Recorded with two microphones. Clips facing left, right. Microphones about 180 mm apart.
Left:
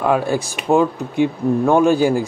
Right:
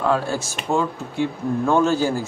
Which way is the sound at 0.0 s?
15° left (ahead or behind).